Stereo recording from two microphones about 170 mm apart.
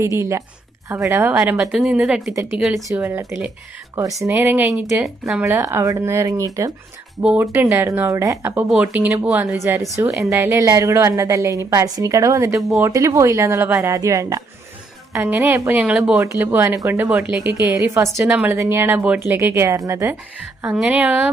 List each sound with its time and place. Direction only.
0.2 s a woman's voice: 15° right (ahead or behind)
2.8 s a woman's voice: 10° right (ahead or behind)
7.2 s a woman's voice: 5° right (ahead or behind)
12.5 s speech: centre (ahead or behind)
12.8 s a woman's voice: 20° right (ahead or behind)
17.5 s a woman's voice: 15° right (ahead or behind)
20.7 s a woman's voice: 5° right (ahead or behind)